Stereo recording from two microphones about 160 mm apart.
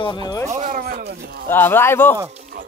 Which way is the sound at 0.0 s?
25° left (ahead or behind).